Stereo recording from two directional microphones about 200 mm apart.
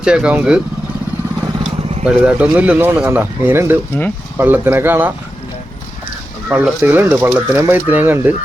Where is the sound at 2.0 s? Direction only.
5° right (ahead or behind).